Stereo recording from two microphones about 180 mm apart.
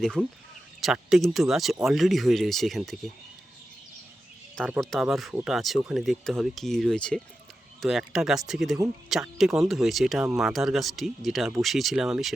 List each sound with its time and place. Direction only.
0.0 s speech: 5° left (ahead or behind)
4.8 s speech: centre (ahead or behind)